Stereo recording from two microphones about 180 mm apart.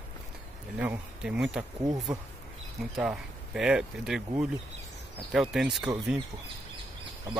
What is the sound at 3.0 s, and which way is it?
Speech, 5° right (ahead or behind).